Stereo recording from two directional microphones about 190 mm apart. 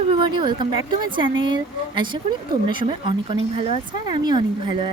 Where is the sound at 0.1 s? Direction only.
25° right (ahead or behind).